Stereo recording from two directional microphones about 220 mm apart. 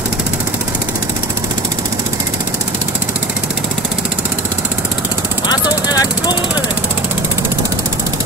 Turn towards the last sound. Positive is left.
turn(degrees=20)  # may be behind; listen again after turning